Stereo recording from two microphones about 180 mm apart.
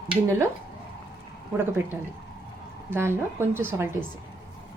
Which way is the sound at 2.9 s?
15° right (ahead or behind).